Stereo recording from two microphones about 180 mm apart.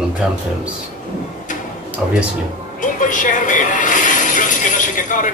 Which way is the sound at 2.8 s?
45° left (ahead or behind).